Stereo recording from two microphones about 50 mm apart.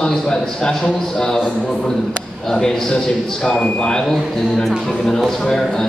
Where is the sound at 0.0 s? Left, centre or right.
Centre.